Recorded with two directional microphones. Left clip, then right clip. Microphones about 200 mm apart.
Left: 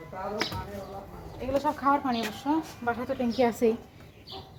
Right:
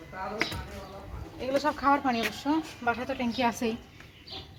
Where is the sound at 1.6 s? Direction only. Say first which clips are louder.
Even; 45° right (ahead or behind).